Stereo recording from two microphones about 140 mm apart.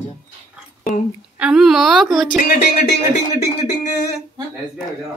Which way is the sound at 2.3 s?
75° left (ahead or behind).